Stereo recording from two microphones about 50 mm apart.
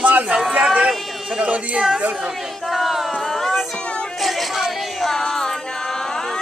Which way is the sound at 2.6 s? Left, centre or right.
Centre.